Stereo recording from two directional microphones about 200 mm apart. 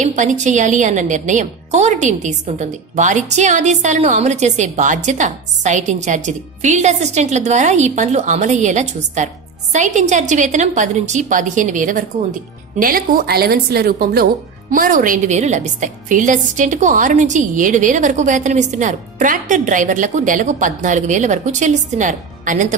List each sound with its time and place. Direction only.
0.0 s a woman's voice: 40° right (ahead or behind)